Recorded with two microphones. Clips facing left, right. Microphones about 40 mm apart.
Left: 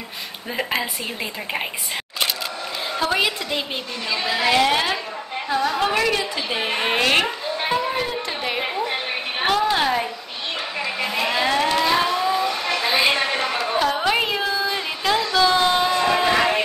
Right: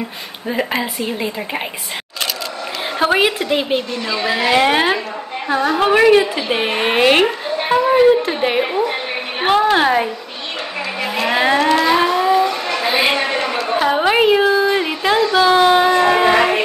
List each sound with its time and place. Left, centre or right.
0.5 s a woman's voice: centre
3.0 s a woman's voice: right
11.1 s vehicle: right
11.8 s a sound: centre